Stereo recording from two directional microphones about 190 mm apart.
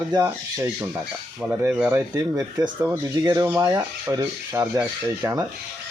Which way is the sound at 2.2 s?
20° right (ahead or behind).